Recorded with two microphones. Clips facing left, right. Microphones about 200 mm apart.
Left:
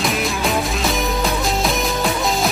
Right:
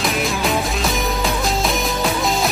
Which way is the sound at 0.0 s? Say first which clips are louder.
Even; centre (ahead or behind).